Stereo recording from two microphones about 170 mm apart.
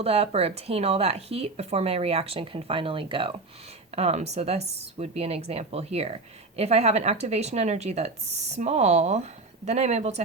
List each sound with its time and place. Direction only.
0.0 s a woman's voice: 35° right (ahead or behind)